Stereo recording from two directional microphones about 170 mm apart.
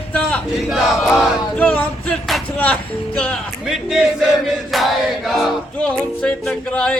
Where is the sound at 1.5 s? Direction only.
10° left (ahead or behind).